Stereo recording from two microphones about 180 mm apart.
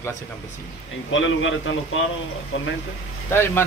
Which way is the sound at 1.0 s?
90° left.